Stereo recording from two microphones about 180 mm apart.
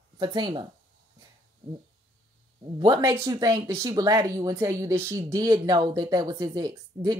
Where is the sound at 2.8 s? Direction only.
20° right (ahead or behind).